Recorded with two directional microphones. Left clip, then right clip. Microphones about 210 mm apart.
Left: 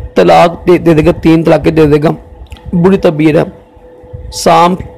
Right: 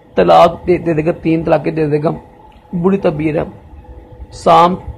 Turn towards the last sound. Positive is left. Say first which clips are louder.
# left 2 dB
turn(degrees=45)  # may be behind; listen again after turning